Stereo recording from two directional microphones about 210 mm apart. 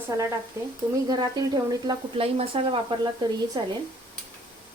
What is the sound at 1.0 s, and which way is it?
Speech, 20° right (ahead or behind).